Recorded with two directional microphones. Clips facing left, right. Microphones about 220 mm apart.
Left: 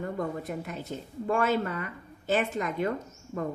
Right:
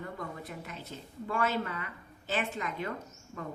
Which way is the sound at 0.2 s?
45° left (ahead or behind).